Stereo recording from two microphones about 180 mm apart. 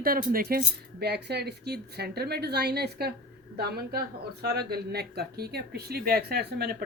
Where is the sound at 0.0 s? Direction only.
50° right (ahead or behind).